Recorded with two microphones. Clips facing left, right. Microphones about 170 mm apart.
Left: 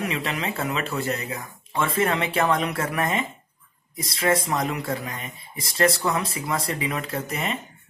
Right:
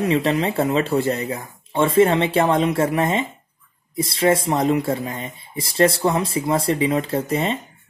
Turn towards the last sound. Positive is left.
turn(degrees=-30)  # may be behind; listen again after turning